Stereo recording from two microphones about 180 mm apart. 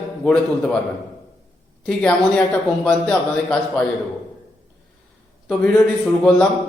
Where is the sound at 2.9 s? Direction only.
5° left (ahead or behind).